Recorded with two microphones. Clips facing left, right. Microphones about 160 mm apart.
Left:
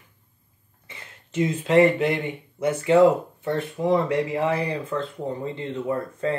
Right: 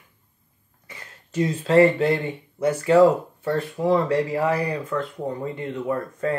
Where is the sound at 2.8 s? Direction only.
20° left (ahead or behind).